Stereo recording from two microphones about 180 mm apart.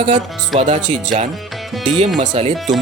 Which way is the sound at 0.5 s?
Centre (ahead or behind).